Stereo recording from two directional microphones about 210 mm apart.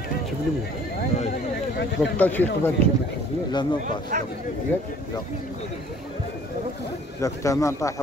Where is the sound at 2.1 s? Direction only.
10° left (ahead or behind).